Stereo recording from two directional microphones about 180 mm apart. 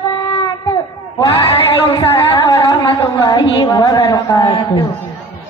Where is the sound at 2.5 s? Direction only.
25° left (ahead or behind).